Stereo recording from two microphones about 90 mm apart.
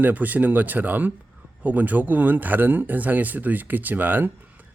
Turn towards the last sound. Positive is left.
turn(degrees=-20)  # may be behind; listen again after turning